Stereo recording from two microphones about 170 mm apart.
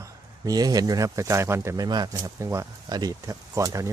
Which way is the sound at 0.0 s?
20° right (ahead or behind).